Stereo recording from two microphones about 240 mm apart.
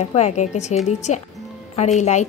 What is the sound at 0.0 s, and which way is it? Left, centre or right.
A woman's voice, left.